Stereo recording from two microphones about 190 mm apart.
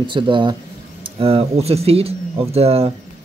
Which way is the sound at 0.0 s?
25° right (ahead or behind).